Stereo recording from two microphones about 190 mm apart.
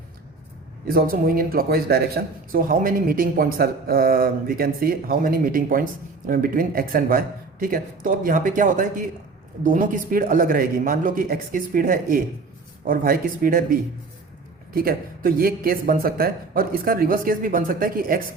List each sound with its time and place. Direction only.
0.9 s speech: 50° right (ahead or behind)